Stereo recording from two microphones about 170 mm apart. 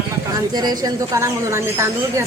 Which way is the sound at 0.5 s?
25° right (ahead or behind).